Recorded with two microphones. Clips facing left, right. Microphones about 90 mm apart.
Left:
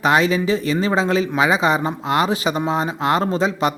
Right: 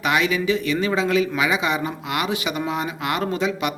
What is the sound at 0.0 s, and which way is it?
A man's voice, 35° left (ahead or behind).